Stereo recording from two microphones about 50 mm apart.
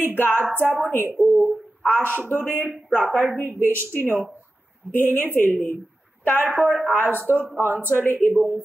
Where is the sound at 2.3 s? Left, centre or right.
Right.